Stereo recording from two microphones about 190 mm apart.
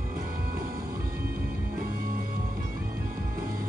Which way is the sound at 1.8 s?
50° right (ahead or behind).